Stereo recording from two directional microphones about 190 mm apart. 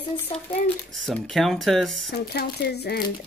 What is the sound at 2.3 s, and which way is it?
Speech, 55° left (ahead or behind).